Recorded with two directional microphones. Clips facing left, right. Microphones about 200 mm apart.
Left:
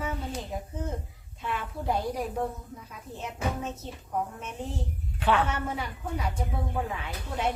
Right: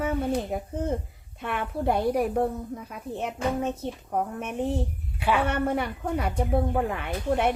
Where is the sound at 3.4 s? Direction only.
10° left (ahead or behind).